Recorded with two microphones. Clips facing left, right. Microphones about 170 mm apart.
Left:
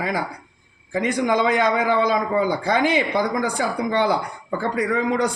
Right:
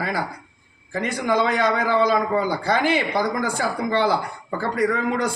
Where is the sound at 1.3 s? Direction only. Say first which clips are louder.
Right 1 dB; 15° left (ahead or behind).